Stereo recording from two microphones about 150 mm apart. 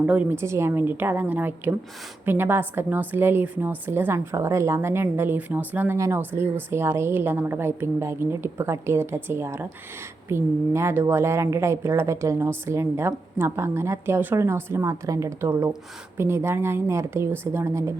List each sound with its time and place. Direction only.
0.0 s a woman's voice: 10° right (ahead or behind)